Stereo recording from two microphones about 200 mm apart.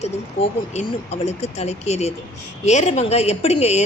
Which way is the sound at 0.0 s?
35° left (ahead or behind).